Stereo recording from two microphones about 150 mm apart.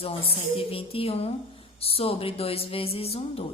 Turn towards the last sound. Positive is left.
turn(degrees=40)  # may be behind; listen again after turning